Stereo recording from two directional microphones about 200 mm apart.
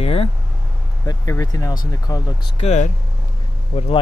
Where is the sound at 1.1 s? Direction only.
15° left (ahead or behind).